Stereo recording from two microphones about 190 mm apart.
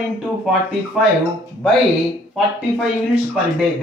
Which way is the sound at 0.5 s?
5° right (ahead or behind).